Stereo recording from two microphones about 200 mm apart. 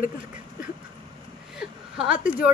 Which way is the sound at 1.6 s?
5° right (ahead or behind).